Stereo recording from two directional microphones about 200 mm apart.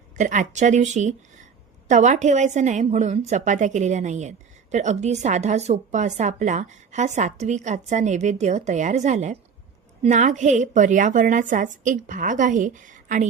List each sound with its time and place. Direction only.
0.2 s a woman's voice: 40° right (ahead or behind)